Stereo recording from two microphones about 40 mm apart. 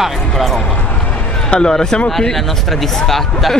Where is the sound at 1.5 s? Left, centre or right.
Centre.